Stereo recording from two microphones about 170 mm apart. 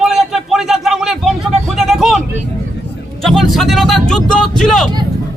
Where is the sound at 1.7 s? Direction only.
Centre (ahead or behind).